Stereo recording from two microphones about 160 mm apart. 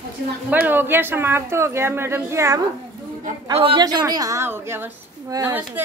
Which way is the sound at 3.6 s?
30° right (ahead or behind).